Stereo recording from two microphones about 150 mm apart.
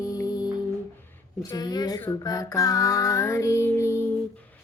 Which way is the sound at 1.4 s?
25° left (ahead or behind).